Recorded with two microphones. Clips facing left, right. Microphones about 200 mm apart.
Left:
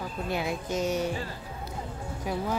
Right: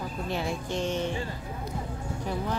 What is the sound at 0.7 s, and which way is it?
Speech, 40° left (ahead or behind).